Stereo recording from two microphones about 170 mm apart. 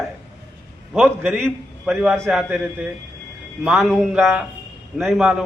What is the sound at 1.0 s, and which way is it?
Speech, 10° right (ahead or behind).